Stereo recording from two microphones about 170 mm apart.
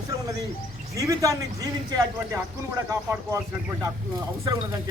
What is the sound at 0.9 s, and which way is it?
A man's voice, 20° right (ahead or behind).